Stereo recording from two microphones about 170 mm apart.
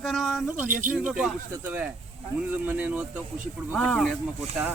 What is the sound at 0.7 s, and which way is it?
Speech, 50° right (ahead or behind).